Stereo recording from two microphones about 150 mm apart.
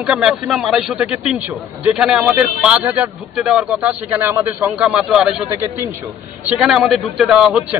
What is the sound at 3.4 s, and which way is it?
Speech, centre (ahead or behind).